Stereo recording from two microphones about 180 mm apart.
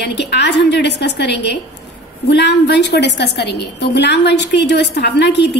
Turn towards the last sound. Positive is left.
turn(degrees=70)  # may be behind; listen again after turning